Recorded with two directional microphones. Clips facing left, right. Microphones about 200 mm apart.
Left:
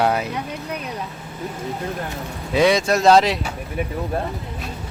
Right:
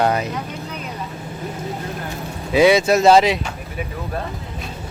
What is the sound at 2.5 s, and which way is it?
Speech, 5° right (ahead or behind).